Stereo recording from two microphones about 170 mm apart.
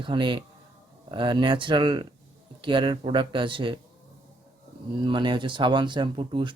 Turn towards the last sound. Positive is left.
turn(degrees=-30)  # may be behind; listen again after turning